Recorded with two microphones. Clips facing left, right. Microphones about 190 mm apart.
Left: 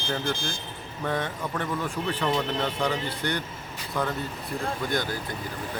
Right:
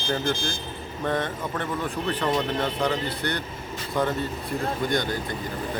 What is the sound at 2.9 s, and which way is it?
Speech, 10° left (ahead or behind).